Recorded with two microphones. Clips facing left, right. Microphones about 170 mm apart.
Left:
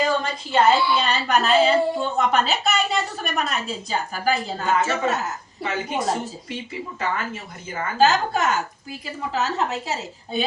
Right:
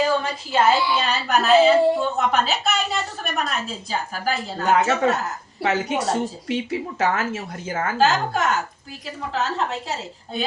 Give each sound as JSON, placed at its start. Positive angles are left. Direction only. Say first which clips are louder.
{"t": 0.0, "sound": "a woman's voice", "louder": "right 1 dB", "side_deg": -5}
{"t": 5.6, "sound": "speech", "louder": "right 3 dB", "side_deg": -75}
{"t": 7.9, "sound": "a woman's voice", "louder": "left 2 dB", "side_deg": 0}